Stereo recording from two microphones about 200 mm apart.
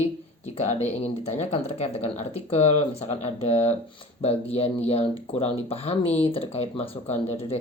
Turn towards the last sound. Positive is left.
turn(degrees=30)  # may be behind; listen again after turning